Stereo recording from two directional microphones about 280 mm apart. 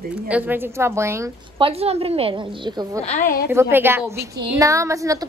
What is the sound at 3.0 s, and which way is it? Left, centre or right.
Speech, left.